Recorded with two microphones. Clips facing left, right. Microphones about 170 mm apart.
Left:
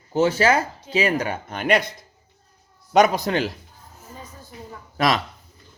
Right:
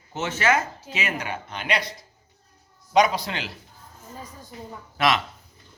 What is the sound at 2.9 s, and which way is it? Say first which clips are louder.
Speech: left 3 dB; 50° left (ahead or behind).